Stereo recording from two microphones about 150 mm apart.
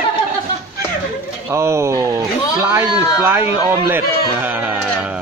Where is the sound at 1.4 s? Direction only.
20° right (ahead or behind).